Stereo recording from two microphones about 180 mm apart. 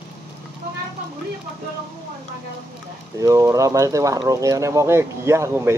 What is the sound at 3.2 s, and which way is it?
Speech, 15° right (ahead or behind).